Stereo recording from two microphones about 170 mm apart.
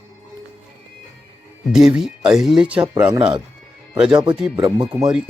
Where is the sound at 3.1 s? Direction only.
30° right (ahead or behind).